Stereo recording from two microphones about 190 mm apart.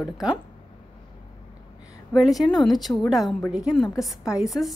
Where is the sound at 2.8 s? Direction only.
Centre (ahead or behind).